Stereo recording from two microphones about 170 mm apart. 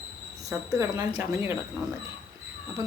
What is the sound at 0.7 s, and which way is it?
Speech, 20° right (ahead or behind).